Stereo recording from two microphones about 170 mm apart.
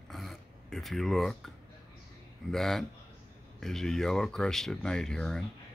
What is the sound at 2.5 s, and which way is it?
Speech, centre (ahead or behind).